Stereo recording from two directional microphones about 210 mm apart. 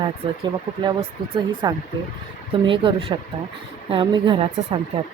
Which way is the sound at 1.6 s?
20° right (ahead or behind).